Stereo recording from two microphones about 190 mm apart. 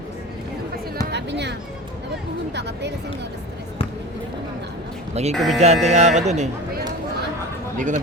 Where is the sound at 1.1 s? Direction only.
65° right (ahead or behind).